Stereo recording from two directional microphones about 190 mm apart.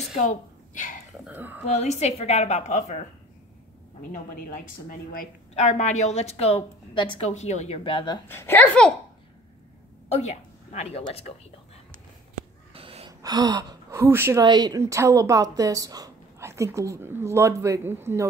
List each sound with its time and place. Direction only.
0.1 s a sound: 40° left (ahead or behind)
1.2 s a woman's voice: 10° right (ahead or behind)
1.7 s a woman's voice: 35° left (ahead or behind)
4.1 s speech: 45° left (ahead or behind)
5.5 s a woman's voice: 35° left (ahead or behind)
8.3 s a woman's voice: 10° left (ahead or behind)
10.1 s speech: 35° left (ahead or behind)
12.7 s gasp: 30° right (ahead or behind)
13.2 s a woman's voice: 20° right (ahead or behind)